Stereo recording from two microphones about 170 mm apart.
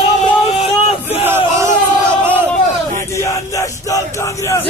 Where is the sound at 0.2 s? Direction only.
30° left (ahead or behind).